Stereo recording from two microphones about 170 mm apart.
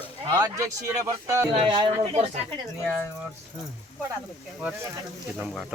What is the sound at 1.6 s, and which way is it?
Speech, 25° right (ahead or behind).